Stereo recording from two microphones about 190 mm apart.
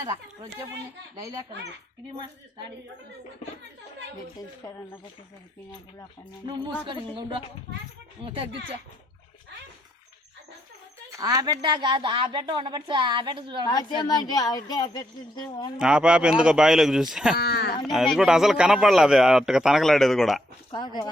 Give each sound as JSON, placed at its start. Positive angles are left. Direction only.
{"t": 4.6, "sound": "speech", "side_deg": 15}
{"t": 6.8, "sound": "speech", "side_deg": -25}
{"t": 11.1, "sound": "speech", "side_deg": -20}
{"t": 13.7, "sound": "a woman's voice", "side_deg": 20}
{"t": 15.8, "sound": "a man's voice", "side_deg": -5}
{"t": 17.3, "sound": "speech", "side_deg": 55}
{"t": 17.8, "sound": "a man's voice", "side_deg": 0}
{"t": 20.7, "sound": "a woman's voice", "side_deg": 25}